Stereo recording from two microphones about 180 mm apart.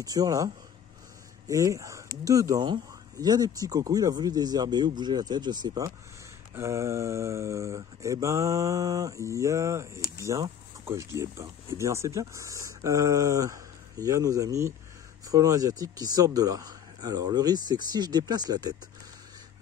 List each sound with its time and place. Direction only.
0.0 s speech: 20° right (ahead or behind)
1.5 s speech: 20° right (ahead or behind)